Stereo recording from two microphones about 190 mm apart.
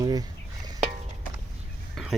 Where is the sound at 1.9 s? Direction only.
Centre (ahead or behind).